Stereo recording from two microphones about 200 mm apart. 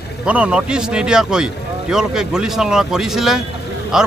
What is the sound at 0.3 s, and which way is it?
A man's voice, 5° right (ahead or behind).